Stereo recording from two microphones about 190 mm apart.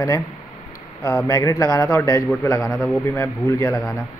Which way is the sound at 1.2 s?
20° left (ahead or behind).